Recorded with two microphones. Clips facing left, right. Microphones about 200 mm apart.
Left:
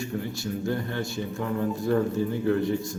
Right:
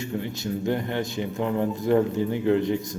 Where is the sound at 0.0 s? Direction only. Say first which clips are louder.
Right 1 dB; 20° right (ahead or behind).